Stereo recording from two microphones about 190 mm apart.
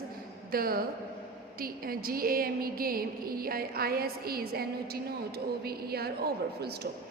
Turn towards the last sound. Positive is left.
turn(degrees=-55)  # may be behind; listen again after turning